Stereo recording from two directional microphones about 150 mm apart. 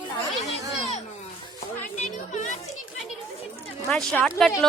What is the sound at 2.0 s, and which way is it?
Speech, 50° left (ahead or behind).